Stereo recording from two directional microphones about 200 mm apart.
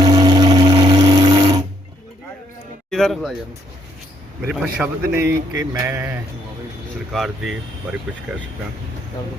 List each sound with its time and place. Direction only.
0.0 s a sound: 20° right (ahead or behind)
2.9 s speech: centre (ahead or behind)
4.4 s speech: 5° right (ahead or behind)
7.1 s speech: centre (ahead or behind)